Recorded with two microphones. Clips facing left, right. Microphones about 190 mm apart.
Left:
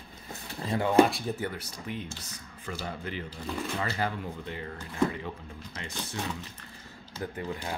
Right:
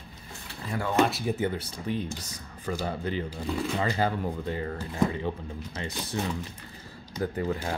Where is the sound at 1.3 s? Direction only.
25° right (ahead or behind).